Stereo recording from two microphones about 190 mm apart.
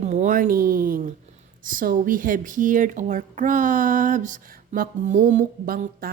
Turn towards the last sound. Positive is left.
turn(degrees=-45)  # may be behind; listen again after turning